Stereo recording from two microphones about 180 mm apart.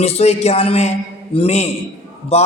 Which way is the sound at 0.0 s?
35° left (ahead or behind).